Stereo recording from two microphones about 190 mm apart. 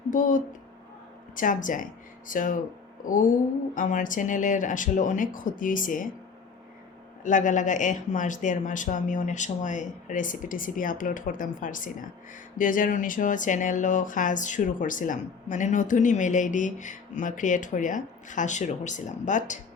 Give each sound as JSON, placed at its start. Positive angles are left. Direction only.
{"t": 0.1, "sound": "speech", "side_deg": 45}
{"t": 7.3, "sound": "speech", "side_deg": 40}